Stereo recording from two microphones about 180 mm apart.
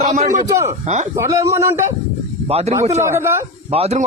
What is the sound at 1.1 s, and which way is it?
Speech, 15° right (ahead or behind).